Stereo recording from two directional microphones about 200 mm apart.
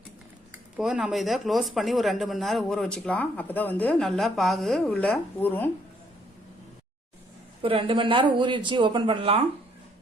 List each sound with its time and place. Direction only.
0.5 s speech: 5° right (ahead or behind)
7.6 s speech: 25° right (ahead or behind)